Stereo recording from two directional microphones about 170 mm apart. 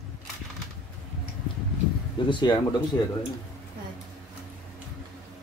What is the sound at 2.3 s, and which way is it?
Speech, 25° left (ahead or behind).